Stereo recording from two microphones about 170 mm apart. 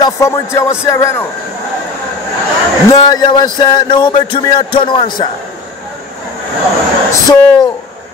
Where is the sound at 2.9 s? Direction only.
25° left (ahead or behind).